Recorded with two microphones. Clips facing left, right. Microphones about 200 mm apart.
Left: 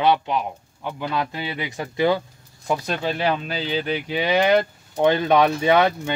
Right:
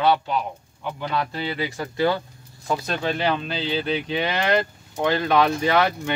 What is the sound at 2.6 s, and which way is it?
Speech, 5° left (ahead or behind).